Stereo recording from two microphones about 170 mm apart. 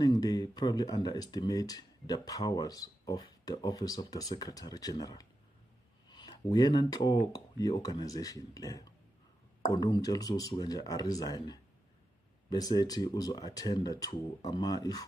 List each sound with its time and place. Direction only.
0.0 s speech: 25° left (ahead or behind)